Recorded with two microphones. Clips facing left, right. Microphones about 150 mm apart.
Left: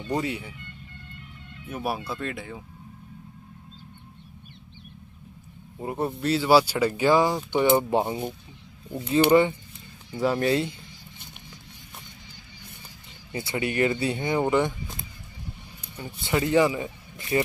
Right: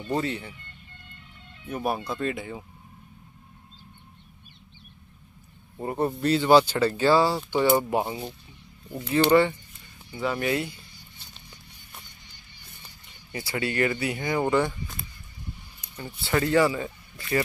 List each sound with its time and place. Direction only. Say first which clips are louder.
0.1 s speech: even; 10° left (ahead or behind)
1.7 s speech: right 2 dB; 5° left (ahead or behind)
5.9 s speech: right 2 dB; centre (ahead or behind); by 9.6 s 15° left (ahead or behind)
10.2 s a sound: left 4 dB; 35° left (ahead or behind)
13.3 s speech: left 1 dB; 25° left (ahead or behind)